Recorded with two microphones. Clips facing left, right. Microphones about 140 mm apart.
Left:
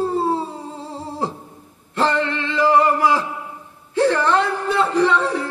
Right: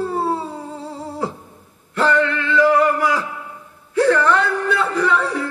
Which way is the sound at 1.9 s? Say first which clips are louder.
Right 2 dB; 30° left (ahead or behind).